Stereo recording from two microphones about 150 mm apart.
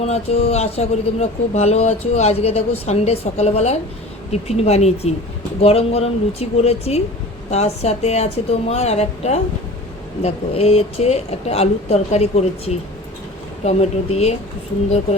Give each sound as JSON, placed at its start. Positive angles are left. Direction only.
{"t": 0.0, "sound": "speech", "side_deg": 45}